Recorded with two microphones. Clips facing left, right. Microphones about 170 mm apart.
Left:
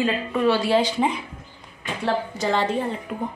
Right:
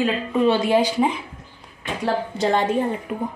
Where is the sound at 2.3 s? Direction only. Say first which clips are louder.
Right 3 dB; 20° right (ahead or behind).